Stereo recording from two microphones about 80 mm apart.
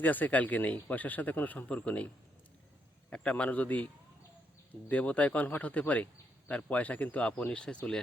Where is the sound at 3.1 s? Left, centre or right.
Centre.